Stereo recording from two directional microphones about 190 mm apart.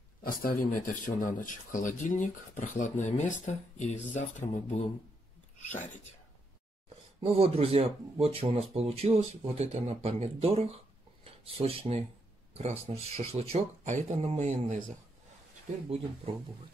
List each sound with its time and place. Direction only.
0.2 s speech: 50° left (ahead or behind)
7.2 s speech: 30° right (ahead or behind)